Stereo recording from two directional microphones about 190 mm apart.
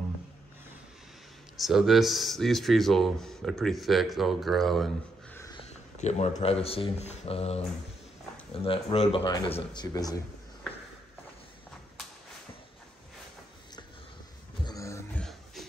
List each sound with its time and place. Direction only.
1.6 s speech: centre (ahead or behind)
5.7 s speech: 35° left (ahead or behind)
8.6 s speech: 30° left (ahead or behind)
14.6 s a sound: 20° left (ahead or behind)